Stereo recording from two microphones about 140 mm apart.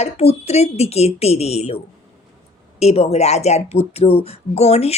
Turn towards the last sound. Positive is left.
turn(degrees=50)  # may be behind; listen again after turning